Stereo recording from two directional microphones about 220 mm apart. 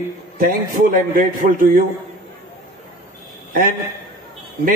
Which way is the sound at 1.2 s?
35° right (ahead or behind).